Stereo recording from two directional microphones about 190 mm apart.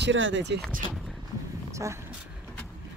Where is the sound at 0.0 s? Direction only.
80° right.